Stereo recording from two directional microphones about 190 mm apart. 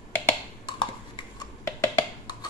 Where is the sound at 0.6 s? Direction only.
25° left (ahead or behind).